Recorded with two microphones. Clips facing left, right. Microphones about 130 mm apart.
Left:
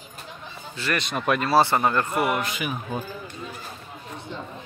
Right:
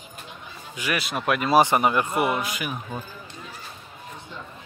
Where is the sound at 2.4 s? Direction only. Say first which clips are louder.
Left 1 dB; centre (ahead or behind).